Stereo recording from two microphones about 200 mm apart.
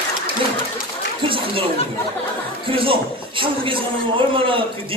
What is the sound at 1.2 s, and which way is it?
Speech, 25° right (ahead or behind).